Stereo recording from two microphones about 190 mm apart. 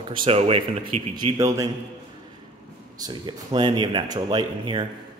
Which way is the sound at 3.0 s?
20° right (ahead or behind).